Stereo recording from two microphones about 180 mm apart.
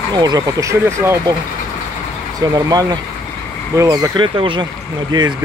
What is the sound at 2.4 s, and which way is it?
Speech, 20° right (ahead or behind).